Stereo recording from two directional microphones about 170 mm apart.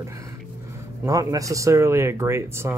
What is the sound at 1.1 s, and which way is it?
Speech, 20° right (ahead or behind).